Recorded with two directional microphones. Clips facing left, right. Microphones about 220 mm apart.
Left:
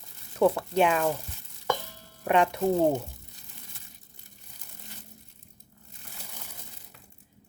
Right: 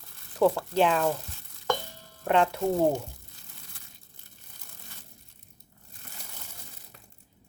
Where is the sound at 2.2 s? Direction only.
15° left (ahead or behind).